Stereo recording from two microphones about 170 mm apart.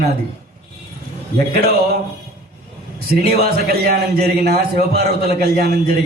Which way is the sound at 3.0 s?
65° right (ahead or behind).